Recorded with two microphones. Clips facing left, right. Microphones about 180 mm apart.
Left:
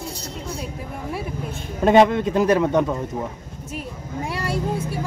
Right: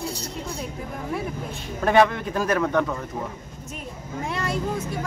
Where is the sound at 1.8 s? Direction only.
20° left (ahead or behind).